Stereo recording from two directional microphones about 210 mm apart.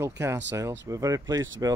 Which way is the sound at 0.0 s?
10° right (ahead or behind).